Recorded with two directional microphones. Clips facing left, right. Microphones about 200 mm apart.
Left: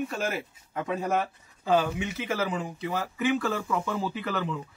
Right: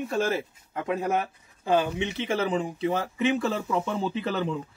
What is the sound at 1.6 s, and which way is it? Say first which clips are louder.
Speech: right 1 dB; 25° right (ahead or behind).